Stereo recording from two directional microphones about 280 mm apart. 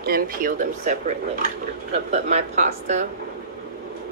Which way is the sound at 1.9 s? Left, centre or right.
Right.